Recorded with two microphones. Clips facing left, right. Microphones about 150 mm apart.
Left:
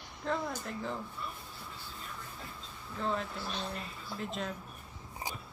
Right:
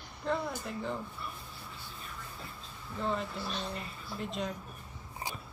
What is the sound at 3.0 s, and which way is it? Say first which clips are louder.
A woman's voice: right 1 dB; centre (ahead or behind).